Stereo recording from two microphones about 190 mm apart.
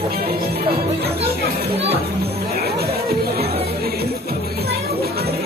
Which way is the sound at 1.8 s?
30° right (ahead or behind).